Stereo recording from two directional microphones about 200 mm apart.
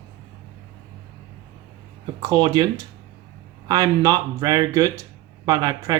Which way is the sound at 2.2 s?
25° right (ahead or behind).